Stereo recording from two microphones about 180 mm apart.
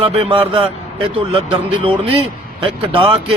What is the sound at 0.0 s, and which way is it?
Speech, 30° right (ahead or behind).